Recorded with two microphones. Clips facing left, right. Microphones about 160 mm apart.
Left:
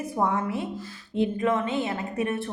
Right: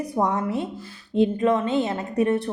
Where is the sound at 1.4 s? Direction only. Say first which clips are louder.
Right 4 dB; 35° right (ahead or behind).